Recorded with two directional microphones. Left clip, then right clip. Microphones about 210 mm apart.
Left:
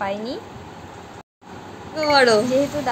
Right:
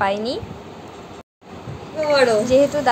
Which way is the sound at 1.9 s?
35° left (ahead or behind).